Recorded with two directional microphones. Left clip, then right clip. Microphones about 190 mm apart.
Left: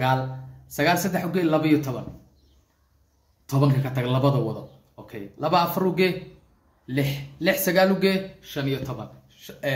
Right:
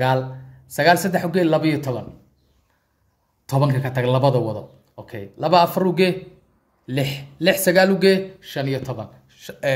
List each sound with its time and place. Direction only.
0.7 s a man's voice: 65° right (ahead or behind)
3.4 s a man's voice: 65° right (ahead or behind)